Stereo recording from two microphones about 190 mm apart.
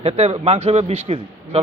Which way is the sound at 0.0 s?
35° right (ahead or behind).